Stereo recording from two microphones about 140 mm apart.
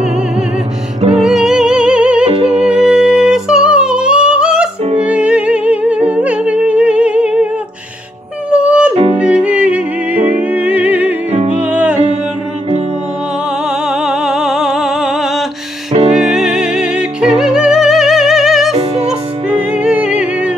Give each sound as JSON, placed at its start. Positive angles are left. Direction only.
{"t": 1.2, "sound": "music", "side_deg": 0}
{"t": 2.2, "sound": "music", "side_deg": -45}
{"t": 2.6, "sound": "music", "side_deg": -5}
{"t": 8.5, "sound": "music", "side_deg": -5}
{"t": 8.9, "sound": "music", "side_deg": -40}
{"t": 9.2, "sound": "music", "side_deg": -10}
{"t": 11.3, "sound": "music", "side_deg": -50}
{"t": 11.7, "sound": "music", "side_deg": -10}
{"t": 13.8, "sound": "music", "side_deg": -5}
{"t": 19.8, "sound": "music", "side_deg": -10}